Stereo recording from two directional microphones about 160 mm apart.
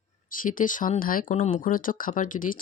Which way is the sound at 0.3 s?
55° left (ahead or behind).